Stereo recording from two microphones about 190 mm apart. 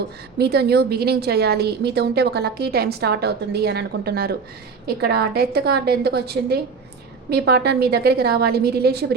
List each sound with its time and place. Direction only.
0.3 s a woman's voice: 60° right (ahead or behind)